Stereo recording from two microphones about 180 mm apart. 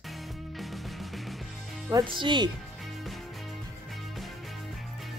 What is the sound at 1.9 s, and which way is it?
Speech, 25° right (ahead or behind).